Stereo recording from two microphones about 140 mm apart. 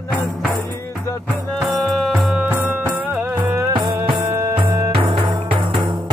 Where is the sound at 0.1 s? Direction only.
10° left (ahead or behind).